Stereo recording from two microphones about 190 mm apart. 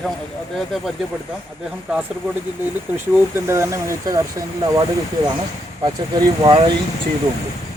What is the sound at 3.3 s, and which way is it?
Speech, 15° right (ahead or behind).